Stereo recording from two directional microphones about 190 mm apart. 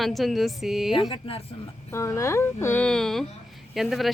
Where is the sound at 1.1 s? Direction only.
30° left (ahead or behind).